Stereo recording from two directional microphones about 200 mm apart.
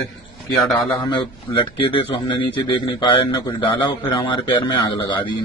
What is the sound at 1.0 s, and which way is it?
A man's voice, 25° left (ahead or behind).